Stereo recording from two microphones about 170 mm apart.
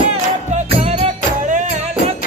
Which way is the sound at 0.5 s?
40° right (ahead or behind).